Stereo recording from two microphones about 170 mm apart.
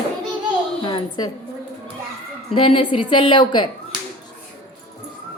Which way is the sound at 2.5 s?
30° left (ahead or behind).